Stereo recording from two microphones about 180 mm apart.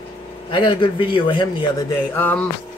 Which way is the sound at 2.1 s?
10° left (ahead or behind).